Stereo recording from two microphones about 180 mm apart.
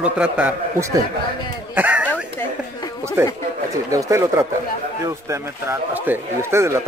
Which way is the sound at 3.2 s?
15° right (ahead or behind).